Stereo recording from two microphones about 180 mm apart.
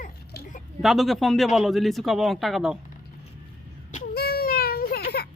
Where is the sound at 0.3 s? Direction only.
60° left (ahead or behind).